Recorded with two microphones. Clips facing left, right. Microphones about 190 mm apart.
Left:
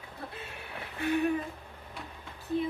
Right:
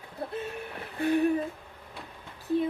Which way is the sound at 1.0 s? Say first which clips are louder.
Right 4 dB; 35° right (ahead or behind).